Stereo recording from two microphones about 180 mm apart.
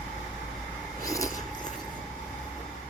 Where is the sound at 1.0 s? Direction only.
20° left (ahead or behind).